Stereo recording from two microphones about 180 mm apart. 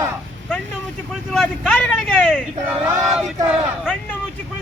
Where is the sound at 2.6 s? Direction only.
10° right (ahead or behind).